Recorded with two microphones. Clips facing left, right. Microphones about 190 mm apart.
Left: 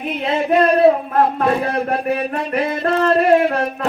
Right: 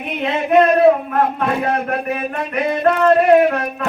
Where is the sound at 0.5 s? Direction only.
30° left (ahead or behind).